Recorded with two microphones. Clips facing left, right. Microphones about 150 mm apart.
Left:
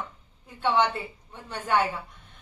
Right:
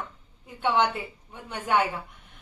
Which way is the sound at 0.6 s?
15° right (ahead or behind).